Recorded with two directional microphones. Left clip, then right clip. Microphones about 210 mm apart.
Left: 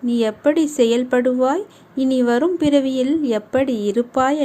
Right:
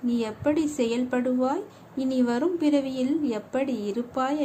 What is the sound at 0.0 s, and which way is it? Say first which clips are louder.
A woman's voice: left 9 dB; 25° left (ahead or behind).